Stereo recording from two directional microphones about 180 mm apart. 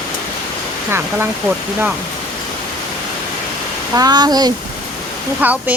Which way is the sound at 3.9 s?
20° right (ahead or behind).